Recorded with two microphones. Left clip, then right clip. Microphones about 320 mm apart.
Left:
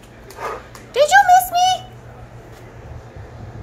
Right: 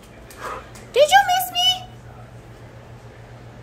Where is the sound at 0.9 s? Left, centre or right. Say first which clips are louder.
Left 2 dB; centre.